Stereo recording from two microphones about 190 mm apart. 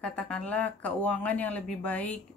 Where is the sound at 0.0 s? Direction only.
5° left (ahead or behind).